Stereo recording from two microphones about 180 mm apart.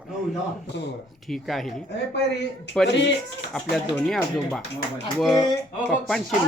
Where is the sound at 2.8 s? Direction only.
75° left (ahead or behind).